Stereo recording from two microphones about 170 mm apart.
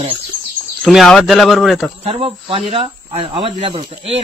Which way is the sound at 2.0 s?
35° right (ahead or behind).